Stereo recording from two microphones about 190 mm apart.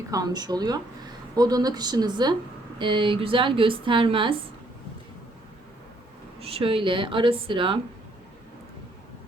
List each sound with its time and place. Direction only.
0.1 s a woman's voice: 20° right (ahead or behind)
6.4 s a woman's voice: 30° right (ahead or behind)